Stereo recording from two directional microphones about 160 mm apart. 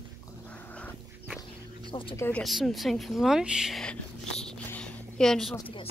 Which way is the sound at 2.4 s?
Centre (ahead or behind).